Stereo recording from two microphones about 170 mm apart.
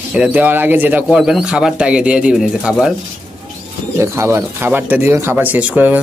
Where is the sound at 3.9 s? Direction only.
15° right (ahead or behind).